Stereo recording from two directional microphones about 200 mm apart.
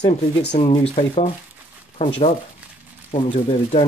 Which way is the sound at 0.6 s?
30° left (ahead or behind).